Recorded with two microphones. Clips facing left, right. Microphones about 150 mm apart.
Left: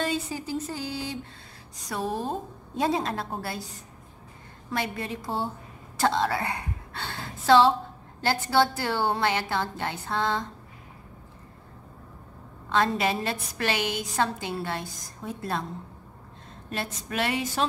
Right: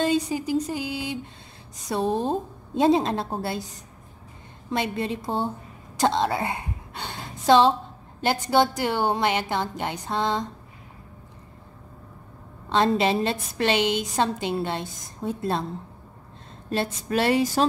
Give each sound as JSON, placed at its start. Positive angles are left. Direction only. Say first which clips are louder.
{"t": 0.0, "sound": "a sound", "louder": "right 6 dB", "side_deg": -15}
{"t": 0.7, "sound": "a woman's voice", "louder": "right 4 dB", "side_deg": -15}
{"t": 12.6, "sound": "a woman's voice", "louder": "right 4 dB", "side_deg": -25}
{"t": 16.7, "sound": "speech", "louder": "right 6 dB", "side_deg": -30}